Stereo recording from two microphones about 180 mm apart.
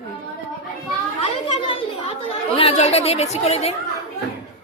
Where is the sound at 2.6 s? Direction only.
35° left (ahead or behind).